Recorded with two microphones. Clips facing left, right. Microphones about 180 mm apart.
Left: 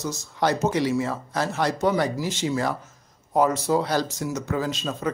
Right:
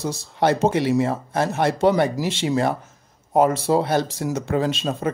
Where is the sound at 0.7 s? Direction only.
60° right (ahead or behind).